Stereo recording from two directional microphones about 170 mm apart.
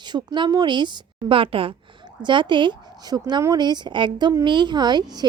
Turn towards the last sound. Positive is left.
turn(degrees=-25)  # may be behind; listen again after turning